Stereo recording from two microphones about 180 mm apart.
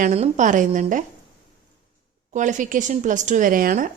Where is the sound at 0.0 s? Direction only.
45° right (ahead or behind).